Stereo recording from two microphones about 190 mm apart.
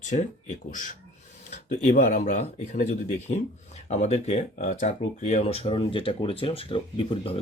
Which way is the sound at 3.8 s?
35° left (ahead or behind).